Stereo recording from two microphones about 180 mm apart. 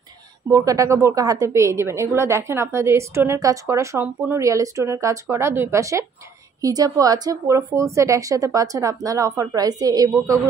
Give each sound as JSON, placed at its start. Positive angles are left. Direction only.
{"t": 0.5, "sound": "a woman's voice", "side_deg": -20}